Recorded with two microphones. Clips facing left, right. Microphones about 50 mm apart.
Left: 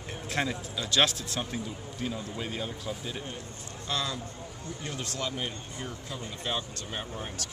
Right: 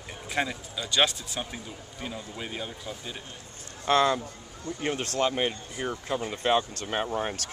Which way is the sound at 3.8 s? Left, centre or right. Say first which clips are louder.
Right 10 dB; right.